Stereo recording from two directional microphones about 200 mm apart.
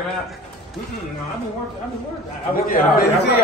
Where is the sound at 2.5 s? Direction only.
45° left (ahead or behind).